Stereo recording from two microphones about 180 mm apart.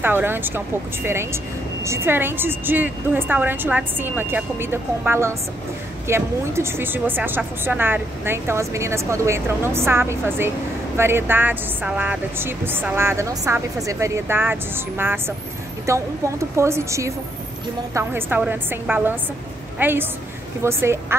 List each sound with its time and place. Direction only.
0.0 s a woman's voice: 10° right (ahead or behind)